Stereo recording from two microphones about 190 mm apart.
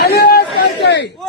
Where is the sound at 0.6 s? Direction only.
60° left (ahead or behind).